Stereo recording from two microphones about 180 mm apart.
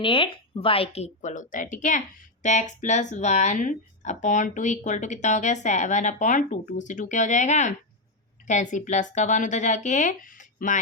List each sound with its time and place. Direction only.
0.0 s speech: 30° left (ahead or behind); by 10.8 s 45° left (ahead or behind)